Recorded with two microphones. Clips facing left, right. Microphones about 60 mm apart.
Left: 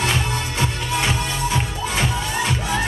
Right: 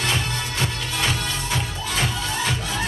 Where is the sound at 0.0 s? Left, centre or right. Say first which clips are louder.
Left 3 dB; left.